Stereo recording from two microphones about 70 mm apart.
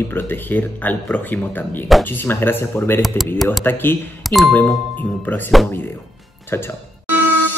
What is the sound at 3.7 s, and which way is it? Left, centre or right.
Speech, left.